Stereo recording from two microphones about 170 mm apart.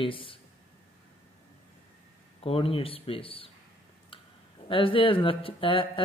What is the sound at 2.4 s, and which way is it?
Speech, 35° left (ahead or behind).